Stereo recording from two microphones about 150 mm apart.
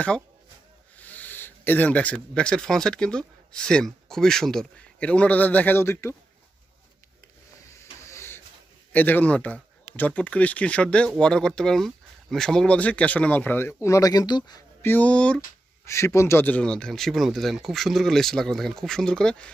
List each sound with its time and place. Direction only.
0.9 s speech: 10° left (ahead or behind)
7.6 s hiss: 20° left (ahead or behind)
8.9 s speech: 10° left (ahead or behind); by 14.6 s 30° left (ahead or behind)
14.8 s speech: 10° left (ahead or behind)
15.8 s speech: 20° left (ahead or behind)